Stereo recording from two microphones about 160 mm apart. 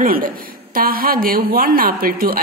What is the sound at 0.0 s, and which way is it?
A woman's voice, 60° right (ahead or behind).